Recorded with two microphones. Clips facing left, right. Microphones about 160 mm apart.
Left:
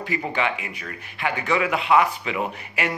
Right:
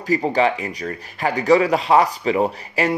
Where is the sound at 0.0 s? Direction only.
40° right (ahead or behind).